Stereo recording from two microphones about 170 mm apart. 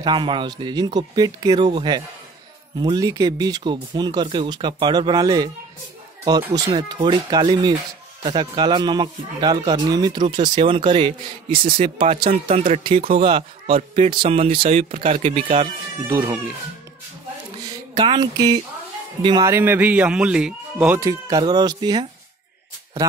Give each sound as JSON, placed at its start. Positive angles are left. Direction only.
{"t": 0.0, "sound": "a man's voice", "side_deg": -25}
{"t": 16.1, "sound": "speech", "side_deg": -10}
{"t": 17.9, "sound": "a man's voice", "side_deg": -25}